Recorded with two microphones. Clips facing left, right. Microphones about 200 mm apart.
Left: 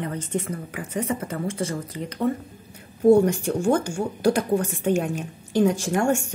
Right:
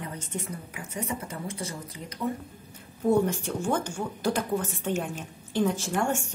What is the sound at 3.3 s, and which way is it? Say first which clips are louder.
Speech: left 7 dB; 10° left (ahead or behind).